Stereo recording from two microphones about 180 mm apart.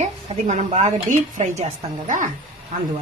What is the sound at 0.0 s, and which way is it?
A woman's voice, 40° right (ahead or behind).